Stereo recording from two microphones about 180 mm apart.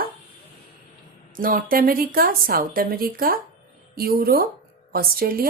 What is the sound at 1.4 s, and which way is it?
A woman's voice, 50° right (ahead or behind).